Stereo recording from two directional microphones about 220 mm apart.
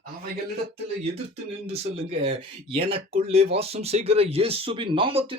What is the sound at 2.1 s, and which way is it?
Speech, 25° right (ahead or behind).